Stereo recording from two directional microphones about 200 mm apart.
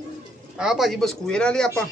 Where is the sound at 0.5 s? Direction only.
Centre (ahead or behind).